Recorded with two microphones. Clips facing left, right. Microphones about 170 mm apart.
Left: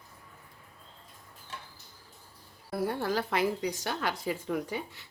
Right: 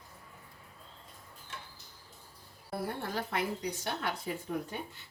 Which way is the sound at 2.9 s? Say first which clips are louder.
Left 6 dB; 90° left.